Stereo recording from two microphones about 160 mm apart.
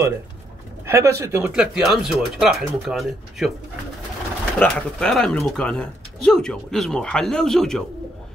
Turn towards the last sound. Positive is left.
turn(degrees=5)  # may be behind; listen again after turning